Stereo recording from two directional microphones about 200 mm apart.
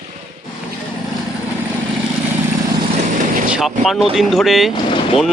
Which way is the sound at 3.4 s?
5° right (ahead or behind).